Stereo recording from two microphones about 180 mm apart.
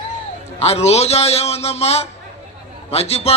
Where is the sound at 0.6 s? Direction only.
35° left (ahead or behind).